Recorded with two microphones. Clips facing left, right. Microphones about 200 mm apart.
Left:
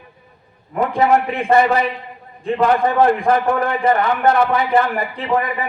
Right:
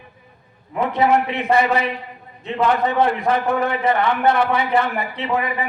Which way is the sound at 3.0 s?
45° left (ahead or behind).